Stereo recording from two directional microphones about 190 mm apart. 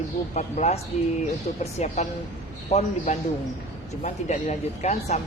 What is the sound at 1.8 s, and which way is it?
Speech, 35° left (ahead or behind).